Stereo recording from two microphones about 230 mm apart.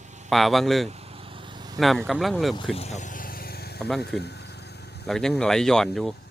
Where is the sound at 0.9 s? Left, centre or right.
Right.